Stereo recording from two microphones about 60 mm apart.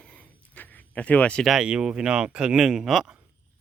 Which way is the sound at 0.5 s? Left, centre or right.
Left.